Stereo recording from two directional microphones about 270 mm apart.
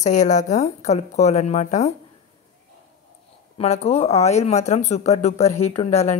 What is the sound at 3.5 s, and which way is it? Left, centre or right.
Speech, left.